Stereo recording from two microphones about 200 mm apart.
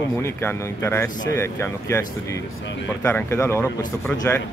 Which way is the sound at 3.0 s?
15° left (ahead or behind).